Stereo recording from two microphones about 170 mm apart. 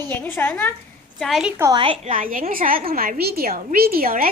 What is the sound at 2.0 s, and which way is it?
A woman's voice, 50° right (ahead or behind).